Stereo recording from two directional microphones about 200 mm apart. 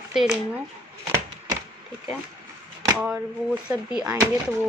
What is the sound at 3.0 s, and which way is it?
Speech, 5° right (ahead or behind).